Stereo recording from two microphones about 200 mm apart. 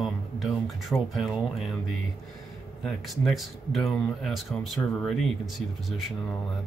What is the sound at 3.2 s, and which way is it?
Speech, centre (ahead or behind).